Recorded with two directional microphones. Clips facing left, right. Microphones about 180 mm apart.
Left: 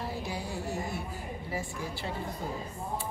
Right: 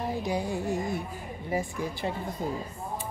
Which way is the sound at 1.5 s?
15° right (ahead or behind).